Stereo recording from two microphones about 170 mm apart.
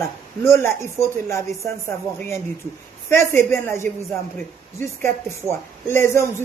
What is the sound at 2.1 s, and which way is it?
A woman's voice, 15° left (ahead or behind).